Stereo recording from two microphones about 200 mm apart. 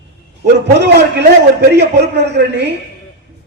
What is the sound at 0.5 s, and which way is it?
A man's voice, 60° right (ahead or behind).